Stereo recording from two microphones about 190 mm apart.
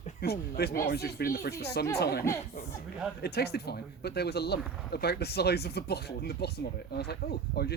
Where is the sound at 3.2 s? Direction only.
55° left (ahead or behind).